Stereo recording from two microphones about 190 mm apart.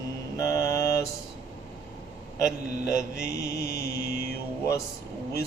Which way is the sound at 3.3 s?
60° left (ahead or behind).